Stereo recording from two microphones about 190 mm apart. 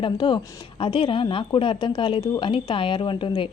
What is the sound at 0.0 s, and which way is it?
A woman's voice, 25° left (ahead or behind).